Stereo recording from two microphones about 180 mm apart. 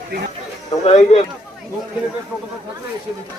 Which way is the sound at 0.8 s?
35° left (ahead or behind).